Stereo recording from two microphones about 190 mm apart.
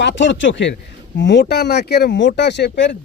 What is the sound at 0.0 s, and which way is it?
A man's voice, 65° left (ahead or behind).